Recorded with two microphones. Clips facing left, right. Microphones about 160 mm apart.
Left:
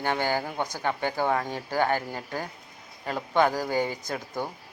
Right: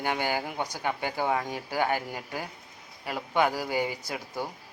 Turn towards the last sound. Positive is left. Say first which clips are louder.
# left 2 dB
turn(degrees=-10)  # may be behind; listen again after turning